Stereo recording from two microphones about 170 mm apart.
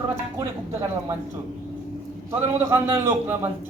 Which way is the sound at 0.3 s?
20° right (ahead or behind).